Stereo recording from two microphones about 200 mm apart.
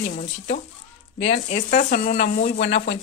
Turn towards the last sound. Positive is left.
turn(degrees=40)  # may be behind; listen again after turning